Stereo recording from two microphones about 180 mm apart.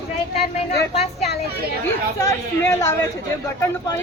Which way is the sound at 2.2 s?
15° left (ahead or behind).